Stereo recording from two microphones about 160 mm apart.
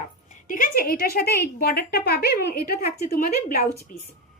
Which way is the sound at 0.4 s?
55° left (ahead or behind).